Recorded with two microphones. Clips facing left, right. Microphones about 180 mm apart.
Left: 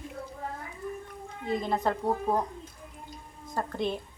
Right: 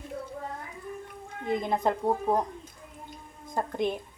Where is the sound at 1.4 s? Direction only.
20° right (ahead or behind).